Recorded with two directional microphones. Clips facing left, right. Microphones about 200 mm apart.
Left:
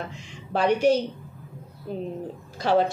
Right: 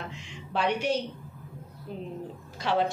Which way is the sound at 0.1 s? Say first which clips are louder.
Left 4 dB; 40° left (ahead or behind).